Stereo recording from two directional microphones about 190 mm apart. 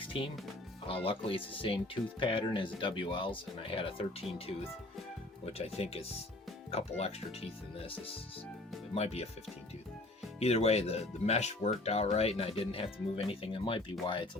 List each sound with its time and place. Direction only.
0.0 s music: 25° left (ahead or behind)
1.0 s speech: 30° left (ahead or behind)
10.4 s speech: 35° left (ahead or behind)